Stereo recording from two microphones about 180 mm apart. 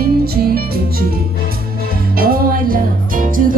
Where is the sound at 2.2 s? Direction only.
55° right (ahead or behind).